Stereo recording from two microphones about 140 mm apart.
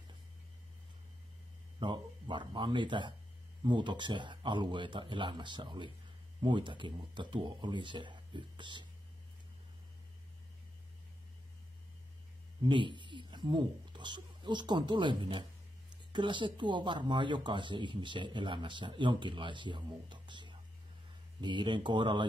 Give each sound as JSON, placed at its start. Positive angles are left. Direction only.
{"t": 1.8, "sound": "speech", "side_deg": -35}
{"t": 12.6, "sound": "speech", "side_deg": -35}